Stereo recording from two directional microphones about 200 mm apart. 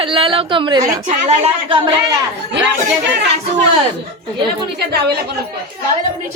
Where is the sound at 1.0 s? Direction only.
35° right (ahead or behind).